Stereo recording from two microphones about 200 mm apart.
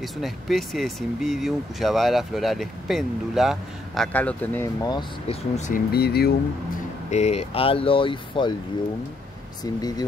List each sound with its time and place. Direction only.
0.0 s speech: centre (ahead or behind)
4.8 s speech: 20° left (ahead or behind)
5.6 s speech: 45° left (ahead or behind)
7.1 s speech: 35° left (ahead or behind)
9.6 s speech: 20° left (ahead or behind)